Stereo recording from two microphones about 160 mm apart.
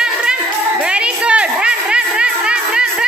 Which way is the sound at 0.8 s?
5° right (ahead or behind).